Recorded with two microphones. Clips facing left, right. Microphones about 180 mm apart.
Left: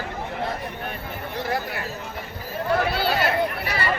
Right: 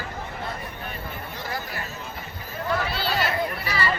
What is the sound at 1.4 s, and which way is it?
Chatter, 60° left (ahead or behind).